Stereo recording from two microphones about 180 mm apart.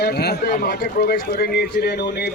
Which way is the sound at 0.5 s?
55° left (ahead or behind).